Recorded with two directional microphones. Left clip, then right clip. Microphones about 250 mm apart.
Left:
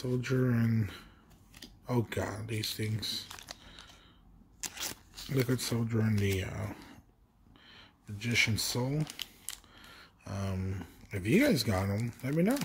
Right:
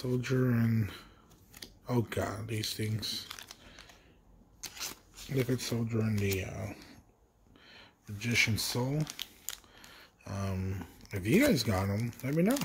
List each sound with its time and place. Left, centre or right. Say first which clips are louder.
0.0 s speech: even; centre
4.6 s shuffling cards: left 2 dB; left
5.4 s speech: even; centre
7.6 s speech: right 1 dB; centre